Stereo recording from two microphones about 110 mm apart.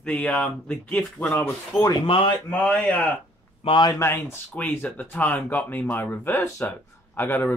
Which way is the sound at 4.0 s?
25° left (ahead or behind).